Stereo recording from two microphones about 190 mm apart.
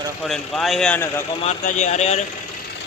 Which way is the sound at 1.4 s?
35° left (ahead or behind).